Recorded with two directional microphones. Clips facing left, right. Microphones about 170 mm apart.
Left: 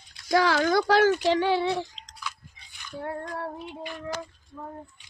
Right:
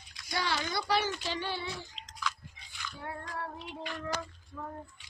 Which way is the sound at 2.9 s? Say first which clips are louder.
Left 8 dB; 45° left (ahead or behind).